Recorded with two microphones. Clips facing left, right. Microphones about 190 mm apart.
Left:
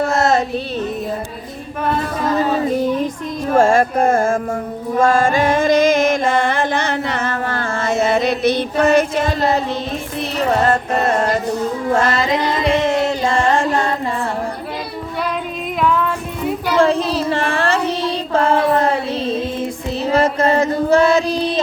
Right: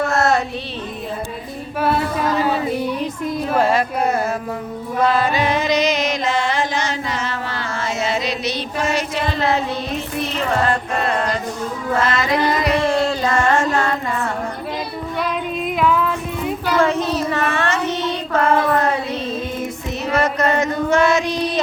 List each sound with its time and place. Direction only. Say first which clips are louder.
0.1 s music: left 1 dB; 20° left (ahead or behind)
3.5 s music: left 6 dB; 45° left (ahead or behind)
10.7 s music: left 4 dB; 45° left (ahead or behind)
11.9 s child singing: left 1 dB; 40° left (ahead or behind)
12.2 s music: left 1 dB; 25° left (ahead or behind)
13.6 s a sound: left 1 dB; 30° left (ahead or behind)
15.8 s a sound: left 1 dB; 5° right (ahead or behind)
16.7 s child singing: left 3 dB; 30° left (ahead or behind)
20.1 s female singing: left 3 dB; 30° left (ahead or behind)